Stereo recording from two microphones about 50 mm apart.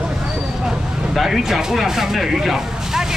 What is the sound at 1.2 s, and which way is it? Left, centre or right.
Speech, centre.